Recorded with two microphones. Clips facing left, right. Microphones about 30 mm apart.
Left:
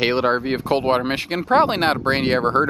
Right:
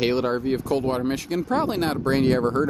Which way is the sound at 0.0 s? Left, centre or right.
Left.